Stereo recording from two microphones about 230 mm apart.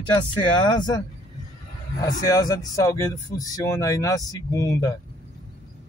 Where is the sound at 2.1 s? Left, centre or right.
Centre.